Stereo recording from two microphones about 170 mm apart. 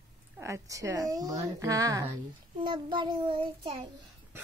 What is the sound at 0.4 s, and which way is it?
A woman's voice, 20° right (ahead or behind).